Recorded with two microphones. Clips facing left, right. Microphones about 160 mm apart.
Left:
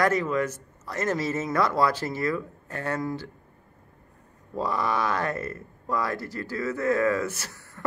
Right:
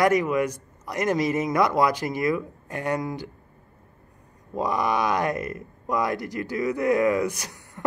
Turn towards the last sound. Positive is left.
turn(degrees=-15)  # may be behind; listen again after turning